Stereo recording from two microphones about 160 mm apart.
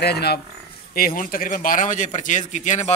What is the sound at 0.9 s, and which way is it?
A man's voice, 60° left (ahead or behind).